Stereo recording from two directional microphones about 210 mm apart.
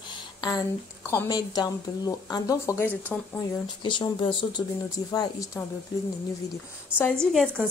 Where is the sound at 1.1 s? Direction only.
15° left (ahead or behind).